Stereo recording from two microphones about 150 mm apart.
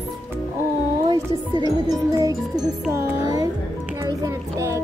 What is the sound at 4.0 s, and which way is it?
Child singing, 20° right (ahead or behind).